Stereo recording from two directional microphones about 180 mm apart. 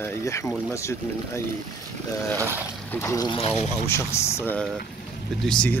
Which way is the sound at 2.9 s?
15° left (ahead or behind).